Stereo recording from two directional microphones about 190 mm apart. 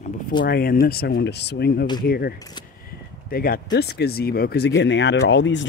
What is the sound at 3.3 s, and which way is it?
Speech, 50° left (ahead or behind).